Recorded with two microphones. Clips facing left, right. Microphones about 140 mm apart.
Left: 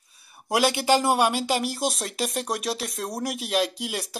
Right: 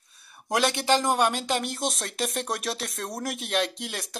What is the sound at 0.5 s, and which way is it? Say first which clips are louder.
Speech: left 2 dB; 5° left (ahead or behind).